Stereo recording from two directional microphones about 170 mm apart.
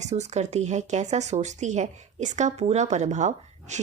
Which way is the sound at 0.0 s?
40° right (ahead or behind).